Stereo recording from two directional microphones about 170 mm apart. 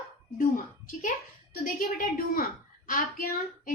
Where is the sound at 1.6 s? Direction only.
55° left (ahead or behind).